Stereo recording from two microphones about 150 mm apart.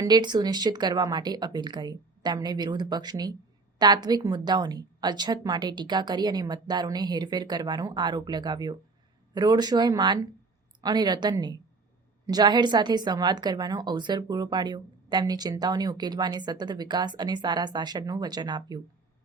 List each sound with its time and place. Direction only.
0.0 s a woman's voice: 30° right (ahead or behind)